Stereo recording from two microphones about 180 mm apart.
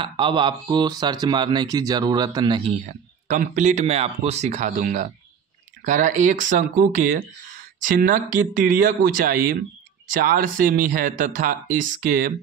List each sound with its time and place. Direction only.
0.0 s speech: 25° right (ahead or behind)
2.9 s speech: 45° right (ahead or behind)